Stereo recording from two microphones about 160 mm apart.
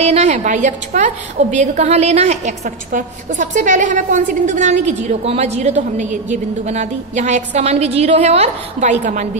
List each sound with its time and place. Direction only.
0.0 s a woman's voice: 40° right (ahead or behind)